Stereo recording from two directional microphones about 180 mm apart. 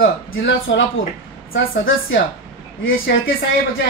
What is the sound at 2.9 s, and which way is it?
Speech, 90° left.